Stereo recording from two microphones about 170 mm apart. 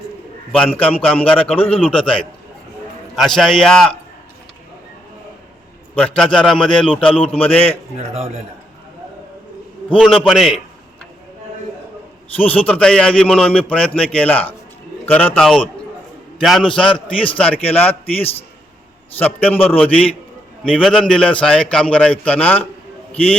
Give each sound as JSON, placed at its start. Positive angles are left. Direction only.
{"t": 0.5, "sound": "a man's voice", "side_deg": 5}
{"t": 5.9, "sound": "a man's voice", "side_deg": 5}
{"t": 7.0, "sound": "a man's voice", "side_deg": 30}
{"t": 7.3, "sound": "a man's voice", "side_deg": 10}
{"t": 8.1, "sound": "a man's voice", "side_deg": -40}
{"t": 10.0, "sound": "a man's voice", "side_deg": 0}
{"t": 12.4, "sound": "a man's voice", "side_deg": 10}